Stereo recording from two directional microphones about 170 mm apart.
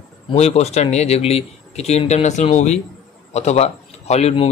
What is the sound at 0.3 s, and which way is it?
A man's voice, 40° left (ahead or behind).